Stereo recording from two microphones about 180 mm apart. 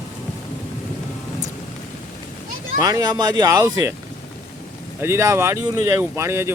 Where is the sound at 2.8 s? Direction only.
20° right (ahead or behind).